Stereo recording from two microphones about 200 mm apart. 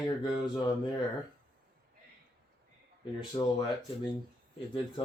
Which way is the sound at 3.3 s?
20° left (ahead or behind).